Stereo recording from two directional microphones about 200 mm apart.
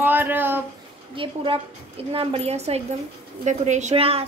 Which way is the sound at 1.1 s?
25° right (ahead or behind).